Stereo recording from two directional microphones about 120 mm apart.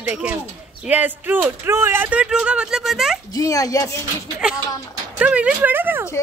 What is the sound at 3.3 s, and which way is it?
Speech, 30° left (ahead or behind).